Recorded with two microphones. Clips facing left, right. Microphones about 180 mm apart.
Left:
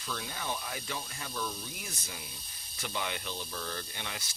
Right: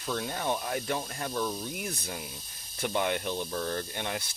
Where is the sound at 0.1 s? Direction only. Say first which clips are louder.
Right 7 dB; 50° right (ahead or behind).